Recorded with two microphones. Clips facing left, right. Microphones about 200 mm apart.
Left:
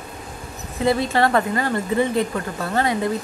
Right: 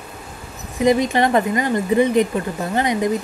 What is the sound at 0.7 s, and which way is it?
Speech, 15° right (ahead or behind).